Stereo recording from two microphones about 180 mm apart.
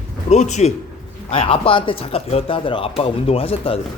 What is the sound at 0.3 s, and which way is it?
Speech, 40° left (ahead or behind).